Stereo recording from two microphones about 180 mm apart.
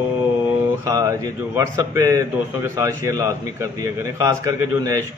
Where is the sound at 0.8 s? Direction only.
15° right (ahead or behind).